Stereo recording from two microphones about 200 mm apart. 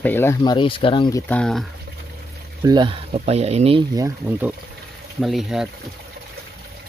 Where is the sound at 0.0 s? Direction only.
10° left (ahead or behind).